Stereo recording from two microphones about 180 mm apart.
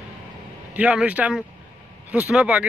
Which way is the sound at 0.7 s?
5° right (ahead or behind).